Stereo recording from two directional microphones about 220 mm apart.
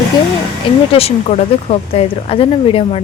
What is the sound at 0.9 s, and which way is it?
Speech, 25° left (ahead or behind).